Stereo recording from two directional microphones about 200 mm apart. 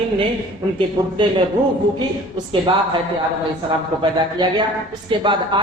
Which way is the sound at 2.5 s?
25° right (ahead or behind).